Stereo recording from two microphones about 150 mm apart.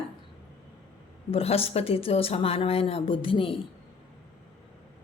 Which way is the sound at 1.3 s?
40° left (ahead or behind).